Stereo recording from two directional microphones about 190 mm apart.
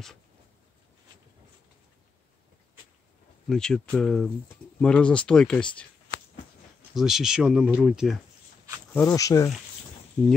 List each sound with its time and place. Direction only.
3.4 s speech: 5° left (ahead or behind)
7.0 s speech: centre (ahead or behind)
8.9 s speech: 15° left (ahead or behind)